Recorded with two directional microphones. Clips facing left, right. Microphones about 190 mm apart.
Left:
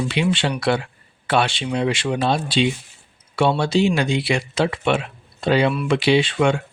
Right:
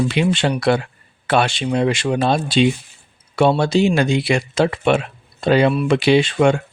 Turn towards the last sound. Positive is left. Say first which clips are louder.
# right 3 dB
turn(degrees=-45)  # may be behind; listen again after turning